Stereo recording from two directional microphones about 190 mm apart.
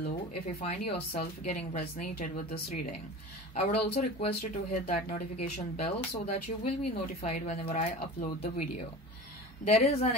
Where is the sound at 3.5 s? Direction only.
35° left (ahead or behind).